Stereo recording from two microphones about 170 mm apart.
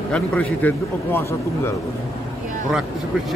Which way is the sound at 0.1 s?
10° left (ahead or behind).